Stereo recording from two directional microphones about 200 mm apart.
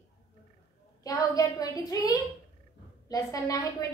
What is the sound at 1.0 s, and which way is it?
A woman's voice, 20° left (ahead or behind).